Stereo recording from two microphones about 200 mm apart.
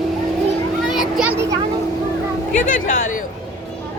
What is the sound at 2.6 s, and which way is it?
Speech, 40° left (ahead or behind).